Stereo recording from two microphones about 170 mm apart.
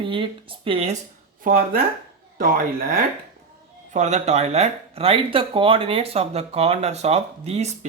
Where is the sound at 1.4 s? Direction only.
55° right (ahead or behind).